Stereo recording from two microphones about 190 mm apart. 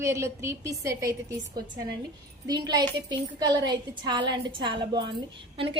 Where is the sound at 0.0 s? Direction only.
15° right (ahead or behind).